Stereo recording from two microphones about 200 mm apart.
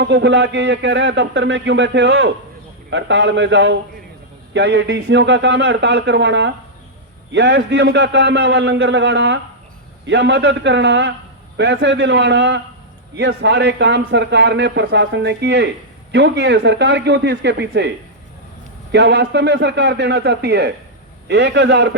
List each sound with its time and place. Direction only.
0.0 s a man's voice: 60° right (ahead or behind)